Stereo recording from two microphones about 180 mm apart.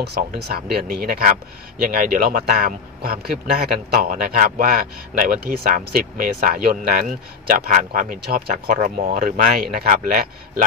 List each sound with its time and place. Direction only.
0.2 s speech: 50° right (ahead or behind)